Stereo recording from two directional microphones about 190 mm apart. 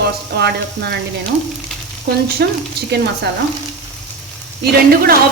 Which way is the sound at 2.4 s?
55° right (ahead or behind).